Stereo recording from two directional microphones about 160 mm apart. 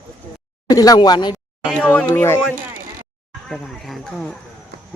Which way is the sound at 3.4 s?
Centre (ahead or behind).